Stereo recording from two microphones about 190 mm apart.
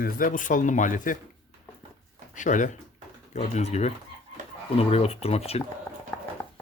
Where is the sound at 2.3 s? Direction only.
40° left (ahead or behind).